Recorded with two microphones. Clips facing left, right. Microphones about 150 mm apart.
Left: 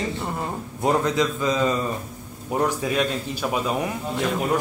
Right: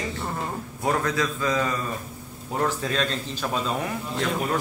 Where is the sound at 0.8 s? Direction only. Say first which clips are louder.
Left 4 dB; 20° left (ahead or behind).